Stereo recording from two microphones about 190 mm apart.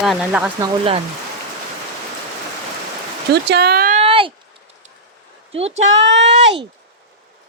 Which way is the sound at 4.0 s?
25° right (ahead or behind).